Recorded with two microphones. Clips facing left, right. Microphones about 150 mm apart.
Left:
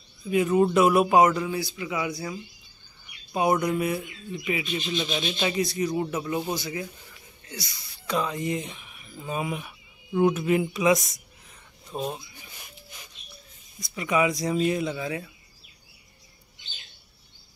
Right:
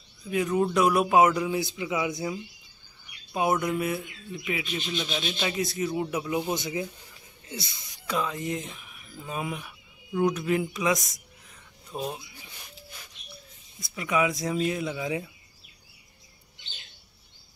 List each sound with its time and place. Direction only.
0.3 s a man's voice: 5° left (ahead or behind); by 2.4 s 20° right (ahead or behind)
3.6 s speech: centre (ahead or behind)
6.5 s speech: 20° right (ahead or behind)
7.4 s wheeze: 25° right (ahead or behind)
8.1 s speech: centre (ahead or behind)
13.7 s speech: centre (ahead or behind)
15.0 s a man's voice: 15° right (ahead or behind)